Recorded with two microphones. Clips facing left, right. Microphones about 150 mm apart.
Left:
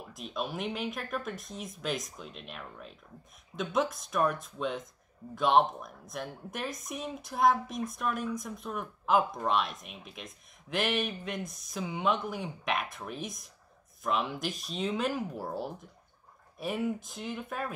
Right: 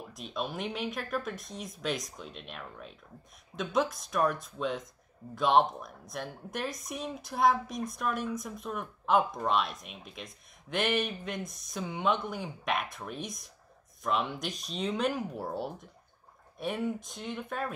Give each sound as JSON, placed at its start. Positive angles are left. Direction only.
{"t": 0.1, "sound": "a woman's voice", "side_deg": 0}